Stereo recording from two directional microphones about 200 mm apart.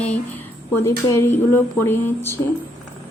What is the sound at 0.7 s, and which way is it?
Speech, 15° left (ahead or behind).